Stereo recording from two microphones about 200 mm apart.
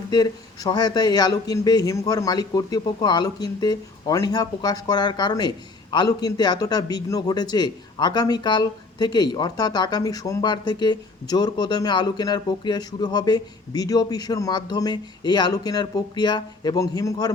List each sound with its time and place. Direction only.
0.1 s a man's voice: 20° left (ahead or behind)